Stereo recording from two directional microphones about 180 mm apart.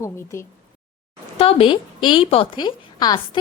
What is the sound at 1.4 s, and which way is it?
A woman's voice, 35° left (ahead or behind).